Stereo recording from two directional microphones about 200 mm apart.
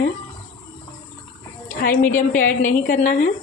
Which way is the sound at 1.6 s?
40° left (ahead or behind).